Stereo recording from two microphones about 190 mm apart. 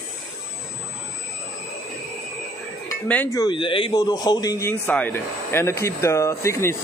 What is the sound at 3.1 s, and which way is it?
Speech, 10° left (ahead or behind).